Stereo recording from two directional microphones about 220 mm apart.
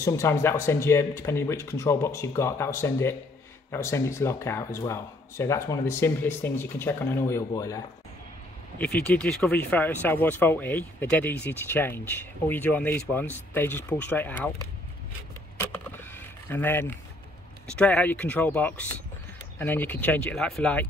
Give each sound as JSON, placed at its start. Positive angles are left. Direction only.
{"t": 0.0, "sound": "speech", "side_deg": 15}
{"t": 15.6, "sound": "keys jangling", "side_deg": 10}
{"t": 17.6, "sound": "speech", "side_deg": 5}